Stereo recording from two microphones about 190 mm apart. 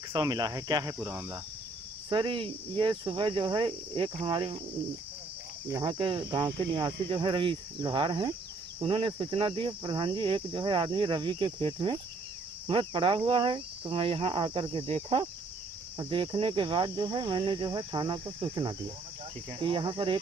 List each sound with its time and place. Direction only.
0.1 s cricket: 20° right (ahead or behind)
0.9 s speech: 15° right (ahead or behind)
2.0 s cricket: 25° right (ahead or behind)
5.7 s cricket: 20° right (ahead or behind)